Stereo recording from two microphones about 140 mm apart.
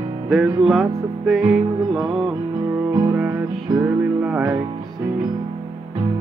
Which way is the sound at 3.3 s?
20° right (ahead or behind).